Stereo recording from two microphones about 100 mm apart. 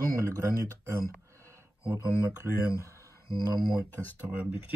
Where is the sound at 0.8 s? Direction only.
30° right (ahead or behind).